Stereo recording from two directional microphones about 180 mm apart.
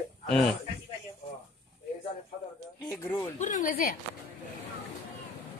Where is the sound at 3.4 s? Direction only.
45° left (ahead or behind).